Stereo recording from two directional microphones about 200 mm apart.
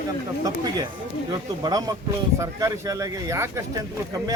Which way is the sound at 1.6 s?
20° right (ahead or behind).